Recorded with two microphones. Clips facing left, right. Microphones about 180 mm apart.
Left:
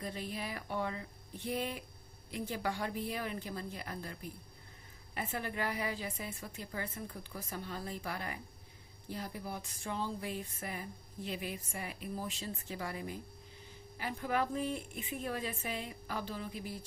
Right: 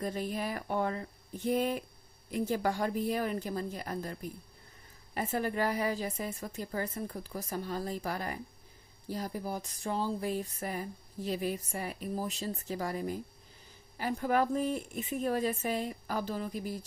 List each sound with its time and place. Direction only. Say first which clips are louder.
0.0 s a woman's voice: right 6 dB; 45° right (ahead or behind)
5.1 s a sound: right 7 dB; 40° right (ahead or behind)
14.0 s a woman's voice: right 6 dB; 45° right (ahead or behind)